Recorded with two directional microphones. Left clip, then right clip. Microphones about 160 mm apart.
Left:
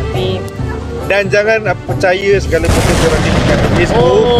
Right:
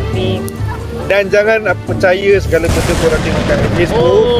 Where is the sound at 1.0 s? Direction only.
20° right (ahead or behind).